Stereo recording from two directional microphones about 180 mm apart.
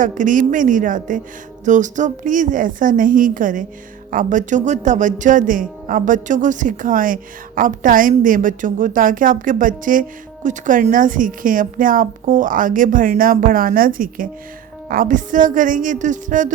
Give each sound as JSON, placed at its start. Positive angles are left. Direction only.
{"t": 0.0, "sound": "speech", "side_deg": -45}